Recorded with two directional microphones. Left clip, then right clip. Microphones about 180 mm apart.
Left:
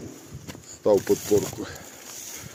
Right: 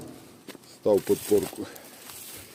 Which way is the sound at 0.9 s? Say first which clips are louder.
Left 2 dB; 10° right (ahead or behind).